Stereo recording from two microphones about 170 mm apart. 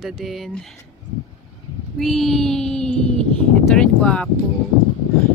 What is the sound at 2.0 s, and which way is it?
Speech, centre (ahead or behind).